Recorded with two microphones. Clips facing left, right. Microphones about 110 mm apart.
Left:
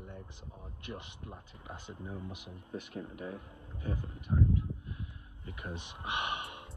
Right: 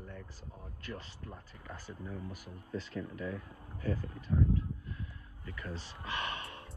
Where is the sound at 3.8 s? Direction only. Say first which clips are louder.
Right 3 dB; 20° left (ahead or behind).